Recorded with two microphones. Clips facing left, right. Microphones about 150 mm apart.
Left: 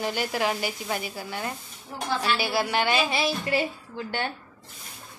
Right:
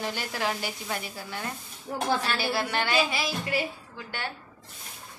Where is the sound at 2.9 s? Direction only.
30° left (ahead or behind).